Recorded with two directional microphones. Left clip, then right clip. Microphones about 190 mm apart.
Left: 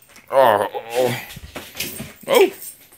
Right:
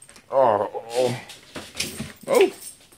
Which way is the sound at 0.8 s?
20° left (ahead or behind).